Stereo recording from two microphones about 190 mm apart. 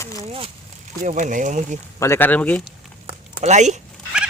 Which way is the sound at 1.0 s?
40° right (ahead or behind).